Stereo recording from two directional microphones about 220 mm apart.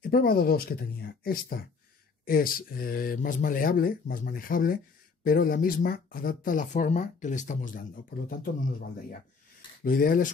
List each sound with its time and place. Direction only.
0.0 s speech: 45° left (ahead or behind)